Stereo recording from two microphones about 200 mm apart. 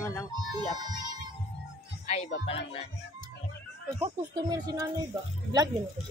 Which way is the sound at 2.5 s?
30° left (ahead or behind).